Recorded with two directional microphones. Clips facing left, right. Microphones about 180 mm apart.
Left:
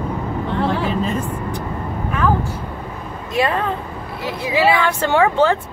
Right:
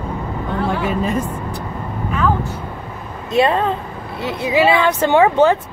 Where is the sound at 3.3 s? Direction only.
25° right (ahead or behind).